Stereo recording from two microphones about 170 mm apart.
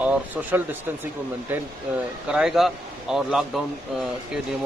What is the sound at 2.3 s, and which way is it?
Speech, 5° right (ahead or behind).